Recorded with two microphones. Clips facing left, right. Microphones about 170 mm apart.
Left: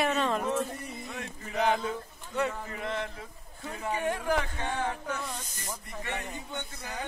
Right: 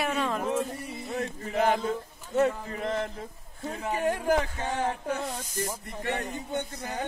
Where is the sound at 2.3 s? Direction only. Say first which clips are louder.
Right 6 dB; 40° right (ahead or behind).